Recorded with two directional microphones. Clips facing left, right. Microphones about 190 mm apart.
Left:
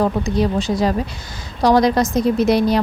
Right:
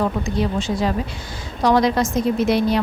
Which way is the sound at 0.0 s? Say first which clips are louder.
Left 3 dB; 35° left (ahead or behind).